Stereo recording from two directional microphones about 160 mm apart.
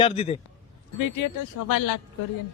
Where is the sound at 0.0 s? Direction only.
40° left (ahead or behind).